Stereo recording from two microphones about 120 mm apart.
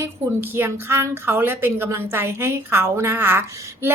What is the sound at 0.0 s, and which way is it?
A woman's voice, 20° right (ahead or behind).